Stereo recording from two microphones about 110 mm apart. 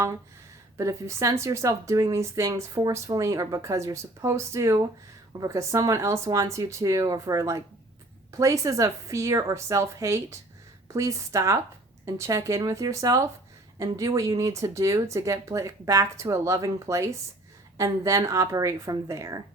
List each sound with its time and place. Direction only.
0.8 s speech: 25° right (ahead or behind)